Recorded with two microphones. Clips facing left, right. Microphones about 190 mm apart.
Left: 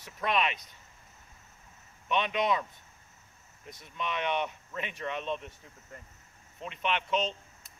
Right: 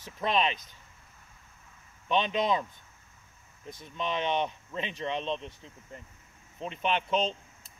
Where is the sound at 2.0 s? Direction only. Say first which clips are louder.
Right 2 dB; 30° right (ahead or behind).